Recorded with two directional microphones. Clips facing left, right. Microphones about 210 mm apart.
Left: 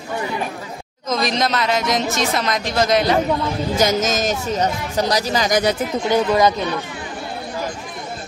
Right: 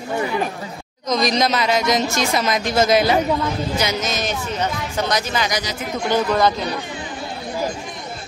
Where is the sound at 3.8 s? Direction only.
45° left (ahead or behind).